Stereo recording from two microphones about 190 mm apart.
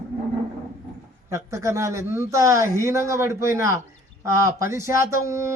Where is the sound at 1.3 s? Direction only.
15° right (ahead or behind).